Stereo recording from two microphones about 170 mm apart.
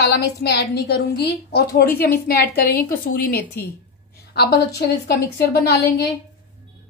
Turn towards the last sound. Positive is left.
turn(degrees=70)  # may be behind; listen again after turning